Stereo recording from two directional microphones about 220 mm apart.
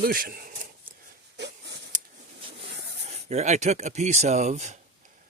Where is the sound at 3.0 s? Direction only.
30° right (ahead or behind).